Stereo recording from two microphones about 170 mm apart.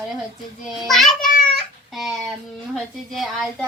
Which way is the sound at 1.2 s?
55° left (ahead or behind).